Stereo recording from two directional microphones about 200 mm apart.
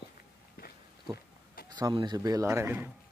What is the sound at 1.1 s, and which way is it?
Goat, 50° left (ahead or behind).